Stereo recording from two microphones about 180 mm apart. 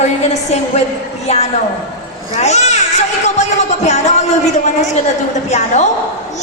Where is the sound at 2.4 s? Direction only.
40° left (ahead or behind).